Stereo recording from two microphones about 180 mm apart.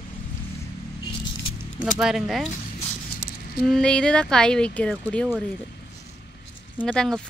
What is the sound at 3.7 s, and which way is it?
Speech, 5° left (ahead or behind).